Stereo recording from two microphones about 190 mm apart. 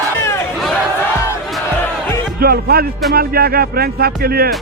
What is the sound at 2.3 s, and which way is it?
Speech, 55° right (ahead or behind).